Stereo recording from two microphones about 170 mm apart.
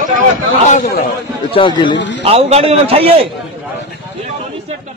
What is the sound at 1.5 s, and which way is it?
Speech, 30° left (ahead or behind).